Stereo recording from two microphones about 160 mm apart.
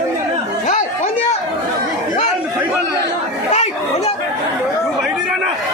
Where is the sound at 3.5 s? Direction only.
45° left (ahead or behind).